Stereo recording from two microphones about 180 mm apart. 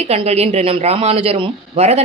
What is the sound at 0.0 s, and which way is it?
A man's voice, 35° right (ahead or behind).